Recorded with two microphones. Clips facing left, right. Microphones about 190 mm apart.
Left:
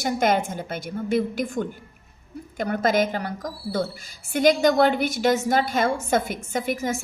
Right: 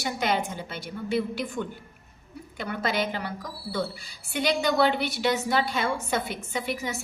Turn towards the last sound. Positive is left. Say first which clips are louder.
# left 5 dB
turn(degrees=45)  # may be behind; listen again after turning